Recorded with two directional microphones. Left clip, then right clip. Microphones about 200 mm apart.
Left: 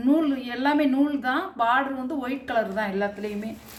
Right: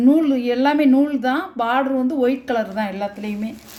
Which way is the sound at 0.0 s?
45° right (ahead or behind).